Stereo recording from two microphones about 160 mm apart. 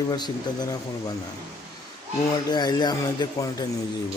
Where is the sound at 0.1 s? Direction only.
25° left (ahead or behind).